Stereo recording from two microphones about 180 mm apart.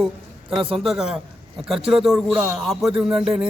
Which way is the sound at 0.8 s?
5° right (ahead or behind).